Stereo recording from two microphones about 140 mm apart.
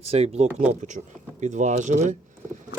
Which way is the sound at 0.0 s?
50° right (ahead or behind).